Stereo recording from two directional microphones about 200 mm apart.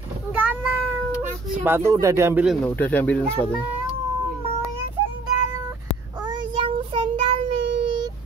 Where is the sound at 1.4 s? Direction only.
10° right (ahead or behind).